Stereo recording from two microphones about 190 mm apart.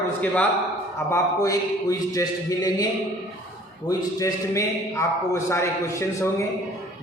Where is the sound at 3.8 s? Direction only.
15° left (ahead or behind).